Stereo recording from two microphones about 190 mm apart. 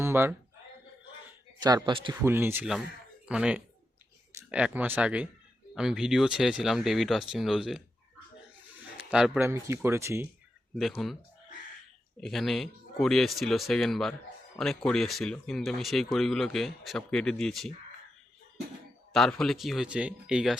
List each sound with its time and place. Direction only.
0.0 s speech: 10° right (ahead or behind)
1.5 s a man's voice: 20° right (ahead or behind)
2.2 s speech: 10° right (ahead or behind)
9.0 s speech: 5° right (ahead or behind)
10.8 s speech: centre (ahead or behind)
12.2 s speech: centre (ahead or behind)
19.1 s speech: centre (ahead or behind)